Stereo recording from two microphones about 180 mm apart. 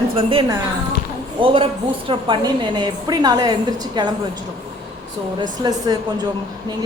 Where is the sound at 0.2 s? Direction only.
30° right (ahead or behind).